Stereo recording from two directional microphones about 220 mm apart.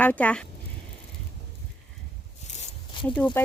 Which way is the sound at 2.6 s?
20° left (ahead or behind).